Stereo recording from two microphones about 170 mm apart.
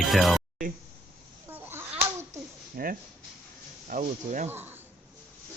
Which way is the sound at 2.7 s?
55° right (ahead or behind).